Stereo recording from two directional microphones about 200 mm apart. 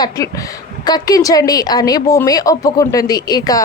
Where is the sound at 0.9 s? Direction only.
20° left (ahead or behind).